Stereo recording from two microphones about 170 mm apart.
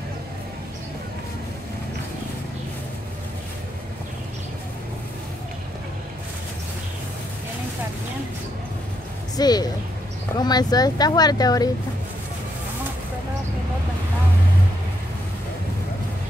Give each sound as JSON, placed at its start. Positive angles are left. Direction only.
{"t": 9.4, "sound": "speech", "side_deg": 25}